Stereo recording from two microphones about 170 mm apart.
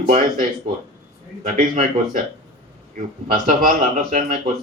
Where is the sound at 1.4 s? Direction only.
45° right (ahead or behind).